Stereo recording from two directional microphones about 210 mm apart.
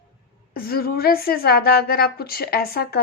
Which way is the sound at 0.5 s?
45° left (ahead or behind).